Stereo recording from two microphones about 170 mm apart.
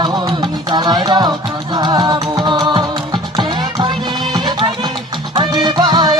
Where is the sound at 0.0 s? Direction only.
25° right (ahead or behind).